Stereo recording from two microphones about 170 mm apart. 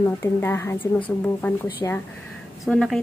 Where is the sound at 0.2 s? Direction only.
15° left (ahead or behind).